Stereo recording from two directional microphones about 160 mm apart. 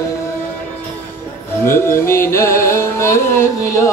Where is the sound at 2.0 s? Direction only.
15° left (ahead or behind).